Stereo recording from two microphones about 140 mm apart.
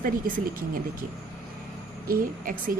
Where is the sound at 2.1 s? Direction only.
85° right.